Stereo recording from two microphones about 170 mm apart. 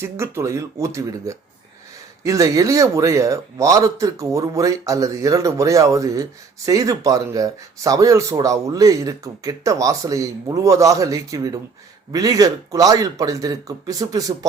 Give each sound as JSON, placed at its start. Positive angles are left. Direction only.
{"t": 0.0, "sound": "speech", "side_deg": -15}